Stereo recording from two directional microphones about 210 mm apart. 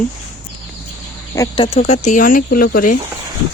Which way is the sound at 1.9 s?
35° left (ahead or behind).